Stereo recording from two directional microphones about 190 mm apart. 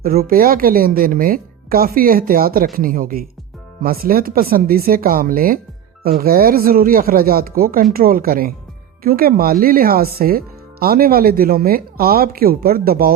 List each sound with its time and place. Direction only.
0.0 s speech: 50° right (ahead or behind)